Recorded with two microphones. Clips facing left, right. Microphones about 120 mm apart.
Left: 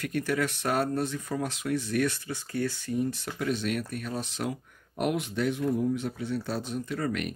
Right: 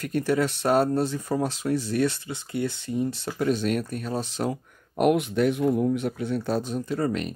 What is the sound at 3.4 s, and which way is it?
Speech, 40° right (ahead or behind).